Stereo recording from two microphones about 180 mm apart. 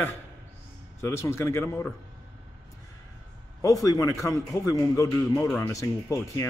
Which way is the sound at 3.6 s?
20° left (ahead or behind).